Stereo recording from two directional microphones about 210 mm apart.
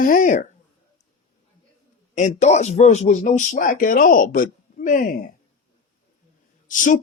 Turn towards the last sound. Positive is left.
turn(degrees=35)  # may be behind; listen again after turning